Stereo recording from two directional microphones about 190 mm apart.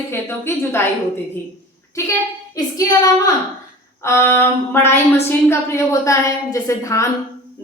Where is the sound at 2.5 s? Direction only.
20° left (ahead or behind).